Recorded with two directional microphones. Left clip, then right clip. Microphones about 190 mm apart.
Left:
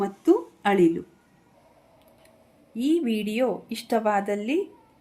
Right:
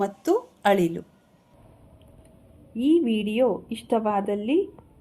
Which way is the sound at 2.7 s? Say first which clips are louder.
Right 3 dB; 5° left (ahead or behind).